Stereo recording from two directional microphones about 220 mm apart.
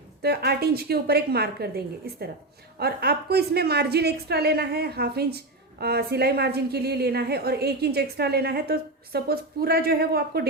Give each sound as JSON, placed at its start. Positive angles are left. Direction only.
{"t": 0.2, "sound": "a woman's voice", "side_deg": -45}